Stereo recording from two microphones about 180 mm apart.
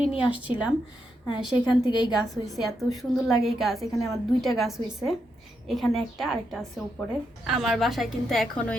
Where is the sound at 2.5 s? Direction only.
Centre (ahead or behind).